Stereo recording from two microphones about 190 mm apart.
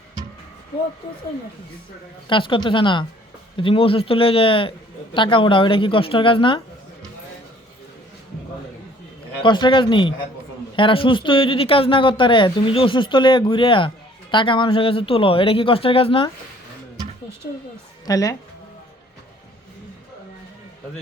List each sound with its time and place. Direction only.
2.3 s speech: 25° left (ahead or behind)
9.4 s speech: 25° left (ahead or behind)
18.0 s a woman's voice: 20° left (ahead or behind)